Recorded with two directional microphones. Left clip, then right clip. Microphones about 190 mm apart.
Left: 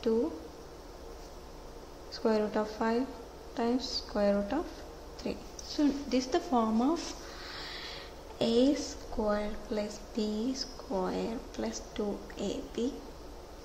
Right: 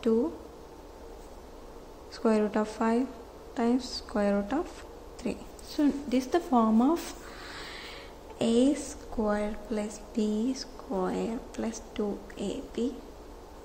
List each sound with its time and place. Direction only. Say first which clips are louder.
2.1 s speech: right 3 dB; 15° right (ahead or behind)
5.2 s a sound: right 2 dB; 15° right (ahead or behind)
9.2 s speech: right 2 dB; 15° right (ahead or behind)